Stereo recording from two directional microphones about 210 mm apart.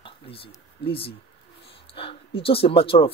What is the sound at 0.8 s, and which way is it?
Speech, 25° left (ahead or behind).